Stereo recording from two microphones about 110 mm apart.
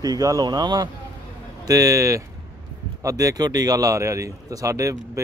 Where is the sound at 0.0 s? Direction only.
35° right (ahead or behind).